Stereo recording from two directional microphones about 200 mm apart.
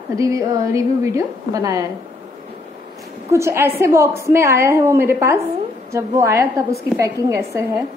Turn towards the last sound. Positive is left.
turn(degrees=-15)  # may be behind; listen again after turning